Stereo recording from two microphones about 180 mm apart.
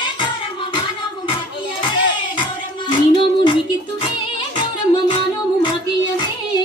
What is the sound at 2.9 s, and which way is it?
Music, 25° left (ahead or behind).